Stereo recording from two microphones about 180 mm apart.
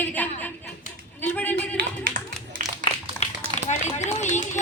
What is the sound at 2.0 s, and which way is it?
Clapping, 50° right (ahead or behind).